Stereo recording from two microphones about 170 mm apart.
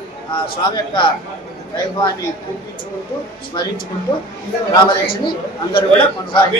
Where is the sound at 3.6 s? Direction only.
25° left (ahead or behind).